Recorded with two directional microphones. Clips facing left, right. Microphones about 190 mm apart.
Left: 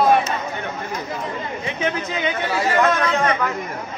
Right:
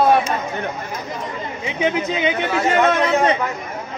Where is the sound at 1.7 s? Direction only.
15° right (ahead or behind).